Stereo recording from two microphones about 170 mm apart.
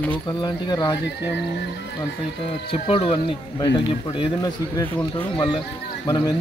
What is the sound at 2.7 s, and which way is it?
A man's voice, 30° left (ahead or behind).